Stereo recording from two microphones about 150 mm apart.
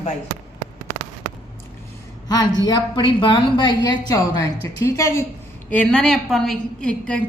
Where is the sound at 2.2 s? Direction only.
25° left (ahead or behind).